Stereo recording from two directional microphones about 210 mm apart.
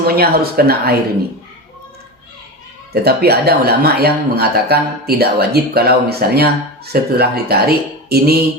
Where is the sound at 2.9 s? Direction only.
50° right (ahead or behind).